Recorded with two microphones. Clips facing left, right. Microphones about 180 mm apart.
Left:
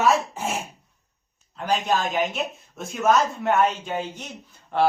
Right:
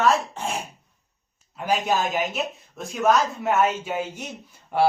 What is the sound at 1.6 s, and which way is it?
Speech, 5° right (ahead or behind).